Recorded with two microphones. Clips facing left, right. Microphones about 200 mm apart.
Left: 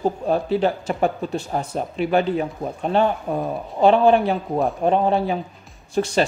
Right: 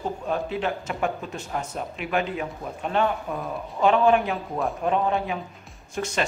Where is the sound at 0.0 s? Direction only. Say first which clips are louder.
Left 6 dB; 35° left (ahead or behind).